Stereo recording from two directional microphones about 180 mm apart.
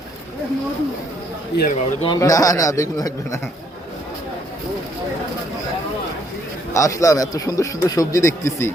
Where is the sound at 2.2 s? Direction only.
20° left (ahead or behind).